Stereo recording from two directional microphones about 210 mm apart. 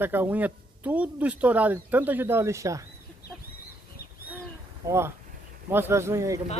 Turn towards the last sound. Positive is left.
turn(degrees=-15)  # may be behind; listen again after turning